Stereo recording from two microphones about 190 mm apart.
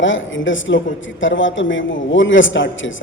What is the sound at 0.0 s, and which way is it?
Speech, 85° left.